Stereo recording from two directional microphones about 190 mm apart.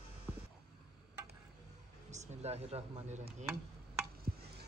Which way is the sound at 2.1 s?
35° right (ahead or behind).